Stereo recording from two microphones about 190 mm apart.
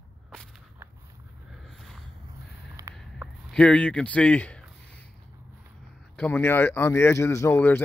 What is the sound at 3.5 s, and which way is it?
Speech, 5° left (ahead or behind).